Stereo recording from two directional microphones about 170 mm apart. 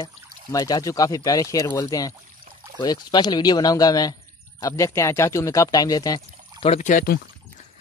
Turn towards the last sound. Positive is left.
turn(degrees=50)  # may be behind; listen again after turning